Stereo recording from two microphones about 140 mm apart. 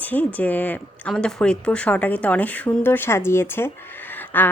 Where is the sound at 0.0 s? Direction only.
10° left (ahead or behind).